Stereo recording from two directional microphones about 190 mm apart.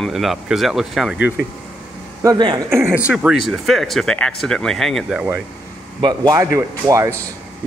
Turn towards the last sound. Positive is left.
turn(degrees=-15)  # may be behind; listen again after turning